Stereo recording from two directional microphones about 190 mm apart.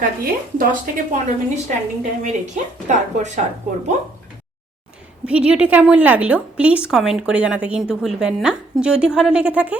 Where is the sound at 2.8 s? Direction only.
40° right (ahead or behind).